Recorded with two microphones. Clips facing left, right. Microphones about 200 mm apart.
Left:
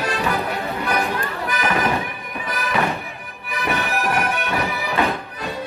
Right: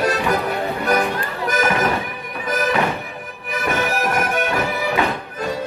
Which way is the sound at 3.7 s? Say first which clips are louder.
Right 2 dB; 45° right (ahead or behind).